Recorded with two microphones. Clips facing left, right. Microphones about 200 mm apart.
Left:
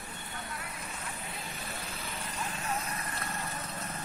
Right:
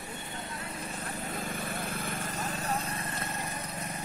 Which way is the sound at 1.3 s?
50° right (ahead or behind).